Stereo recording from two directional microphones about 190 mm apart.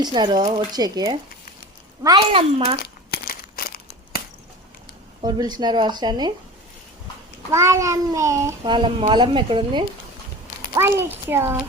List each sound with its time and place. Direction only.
0.0 s a child's voice: 20° right (ahead or behind)
3.1 s crumpling: 50° left (ahead or behind)
5.2 s a child's voice: 20° right (ahead or behind)
7.5 s a child's voice: 15° right (ahead or behind)
10.8 s a child's voice: 15° right (ahead or behind)